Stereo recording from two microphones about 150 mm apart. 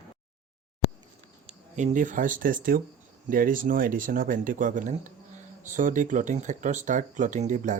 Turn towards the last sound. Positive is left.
turn(degrees=-55)  # may be behind; listen again after turning